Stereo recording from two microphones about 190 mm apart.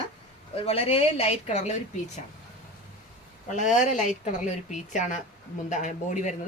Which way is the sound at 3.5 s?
40° left (ahead or behind).